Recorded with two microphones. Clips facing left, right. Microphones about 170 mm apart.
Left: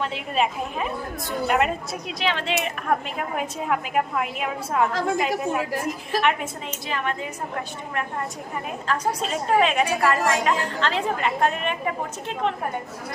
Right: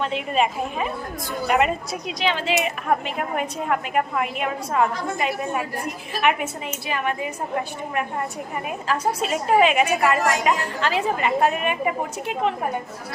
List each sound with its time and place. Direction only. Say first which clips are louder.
0.0 s speech: right 2 dB; centre (ahead or behind)
5.7 s a woman's voice: left 4 dB; 90° left
6.2 s a woman's voice: right 6 dB; 5° right (ahead or behind)